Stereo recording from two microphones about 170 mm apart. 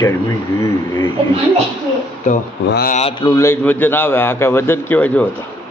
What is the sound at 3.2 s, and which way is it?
A man's voice, 20° left (ahead or behind).